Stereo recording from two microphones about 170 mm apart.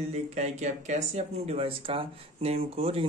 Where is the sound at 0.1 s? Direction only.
40° right (ahead or behind).